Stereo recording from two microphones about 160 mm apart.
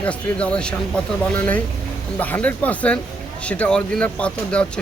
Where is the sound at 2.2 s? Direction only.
10° left (ahead or behind).